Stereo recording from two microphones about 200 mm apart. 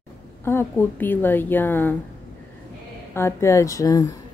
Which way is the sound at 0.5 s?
10° left (ahead or behind).